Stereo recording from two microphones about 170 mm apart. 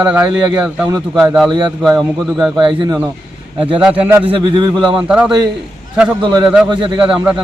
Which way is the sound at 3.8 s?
10° right (ahead or behind).